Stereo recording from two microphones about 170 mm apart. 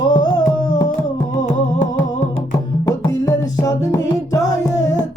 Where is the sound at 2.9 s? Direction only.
20° left (ahead or behind).